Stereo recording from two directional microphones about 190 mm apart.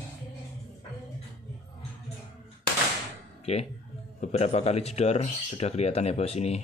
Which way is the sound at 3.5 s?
35° left (ahead or behind).